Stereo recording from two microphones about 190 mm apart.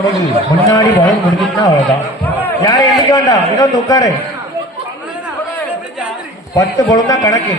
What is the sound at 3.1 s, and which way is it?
Speech, 20° left (ahead or behind).